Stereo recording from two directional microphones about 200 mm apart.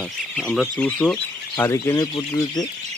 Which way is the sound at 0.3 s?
Centre (ahead or behind).